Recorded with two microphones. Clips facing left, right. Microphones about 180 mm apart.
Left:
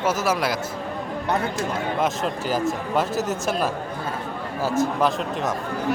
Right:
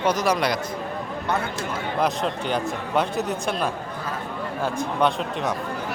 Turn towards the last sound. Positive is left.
turn(degrees=5)  # may be behind; listen again after turning